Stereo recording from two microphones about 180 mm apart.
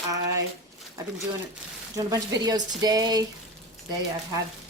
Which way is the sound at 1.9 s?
20° right (ahead or behind).